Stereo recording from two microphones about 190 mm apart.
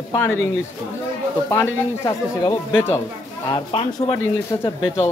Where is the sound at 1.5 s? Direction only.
15° left (ahead or behind).